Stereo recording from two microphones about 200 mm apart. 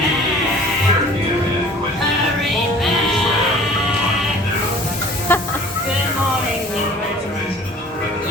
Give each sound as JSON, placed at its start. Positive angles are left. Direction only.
{"t": 5.3, "sound": "hiss", "side_deg": 10}